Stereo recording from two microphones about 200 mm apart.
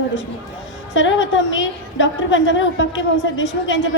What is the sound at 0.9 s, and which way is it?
A woman's voice, 70° left (ahead or behind).